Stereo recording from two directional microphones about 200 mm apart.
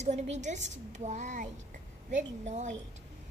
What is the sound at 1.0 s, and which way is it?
A woman's voice, 35° right (ahead or behind).